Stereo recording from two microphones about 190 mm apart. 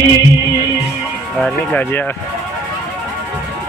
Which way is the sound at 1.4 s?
5° left (ahead or behind).